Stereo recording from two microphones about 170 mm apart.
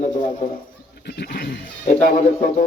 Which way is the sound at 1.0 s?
75° left (ahead or behind).